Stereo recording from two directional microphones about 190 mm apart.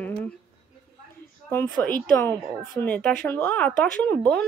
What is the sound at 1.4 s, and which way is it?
A woman's voice, 5° left (ahead or behind).